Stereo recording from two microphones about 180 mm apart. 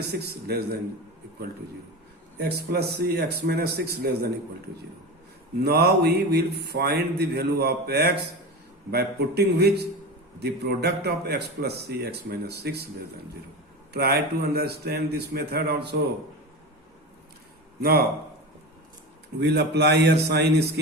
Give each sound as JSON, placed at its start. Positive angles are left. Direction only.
{"t": 0.1, "sound": "speech", "side_deg": -65}
{"t": 2.4, "sound": "speech", "side_deg": -65}
{"t": 5.6, "sound": "speech", "side_deg": -65}
{"t": 13.9, "sound": "speech", "side_deg": -60}
{"t": 19.4, "sound": "a man's voice", "side_deg": -70}